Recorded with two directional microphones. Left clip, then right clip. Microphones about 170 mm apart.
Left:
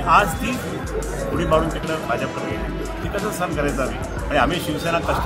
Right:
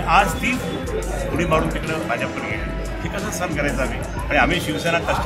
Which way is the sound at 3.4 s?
Centre (ahead or behind).